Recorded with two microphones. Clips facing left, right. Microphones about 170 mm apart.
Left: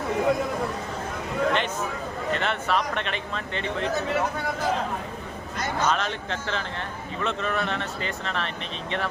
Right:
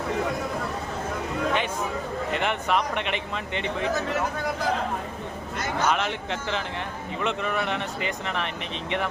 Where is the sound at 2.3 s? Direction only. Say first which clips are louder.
Even; 15° right (ahead or behind).